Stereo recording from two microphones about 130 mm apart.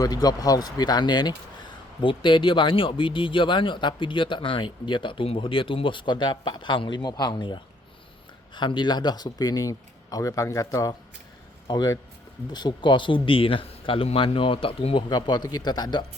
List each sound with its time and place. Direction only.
0.0 s speech: 30° left (ahead or behind); by 15.0 s 45° left (ahead or behind)
15.1 s speech: 35° left (ahead or behind)